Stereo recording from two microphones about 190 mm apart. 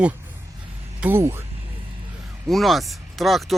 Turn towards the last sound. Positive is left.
turn(degrees=0)  # may be behind; listen again after turning